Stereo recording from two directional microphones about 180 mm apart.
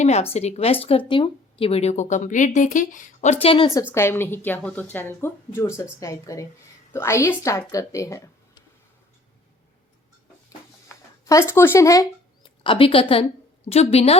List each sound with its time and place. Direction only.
0.0 s speech: 40° left (ahead or behind)
3.4 s a woman's voice: 30° left (ahead or behind)
3.9 s a woman's voice: 15° left (ahead or behind)
10.8 s a sound: 15° left (ahead or behind)
13.7 s speech: 35° left (ahead or behind)